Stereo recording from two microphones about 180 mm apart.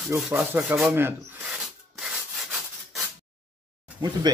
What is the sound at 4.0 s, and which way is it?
Speech, 20° right (ahead or behind).